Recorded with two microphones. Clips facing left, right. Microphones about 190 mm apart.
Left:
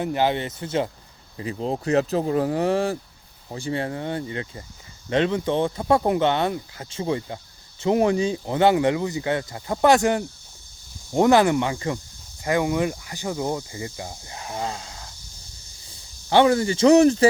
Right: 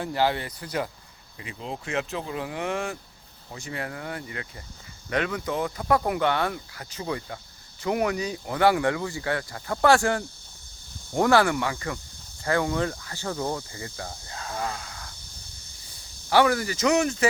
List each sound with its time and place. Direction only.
0.0 s speech: 20° left (ahead or behind)
1.4 s speech: 40° left (ahead or behind)
16.3 s speech: 25° left (ahead or behind)